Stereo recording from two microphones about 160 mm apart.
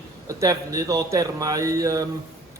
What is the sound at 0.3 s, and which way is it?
Speech, 20° right (ahead or behind).